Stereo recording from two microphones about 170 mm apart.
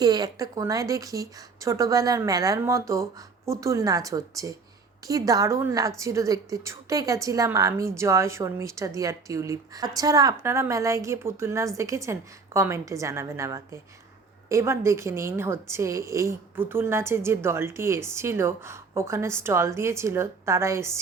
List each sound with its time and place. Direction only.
0.0 s a woman's voice: 25° right (ahead or behind)